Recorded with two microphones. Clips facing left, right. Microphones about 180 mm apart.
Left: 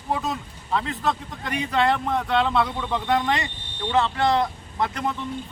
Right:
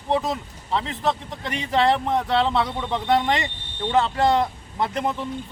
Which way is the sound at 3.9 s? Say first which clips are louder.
Right 1 dB; 40° right (ahead or behind).